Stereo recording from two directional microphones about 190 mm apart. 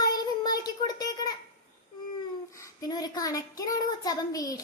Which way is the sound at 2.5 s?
15° left (ahead or behind).